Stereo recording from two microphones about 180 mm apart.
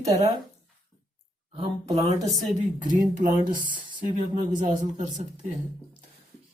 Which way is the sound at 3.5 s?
50° right (ahead or behind).